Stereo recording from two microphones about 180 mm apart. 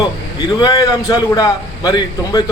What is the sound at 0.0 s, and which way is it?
A man's voice, 25° left (ahead or behind).